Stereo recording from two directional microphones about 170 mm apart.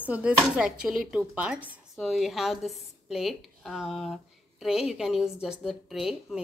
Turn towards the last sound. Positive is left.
turn(degrees=0)  # may be behind; listen again after turning